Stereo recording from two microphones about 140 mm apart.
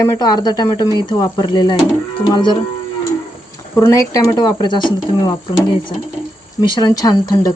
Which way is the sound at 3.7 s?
20° left (ahead or behind).